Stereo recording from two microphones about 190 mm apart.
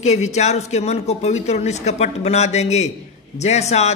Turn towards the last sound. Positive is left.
turn(degrees=35)  # may be behind; listen again after turning